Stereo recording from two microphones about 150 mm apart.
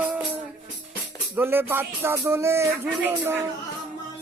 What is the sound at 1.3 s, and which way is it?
Music, 15° right (ahead or behind).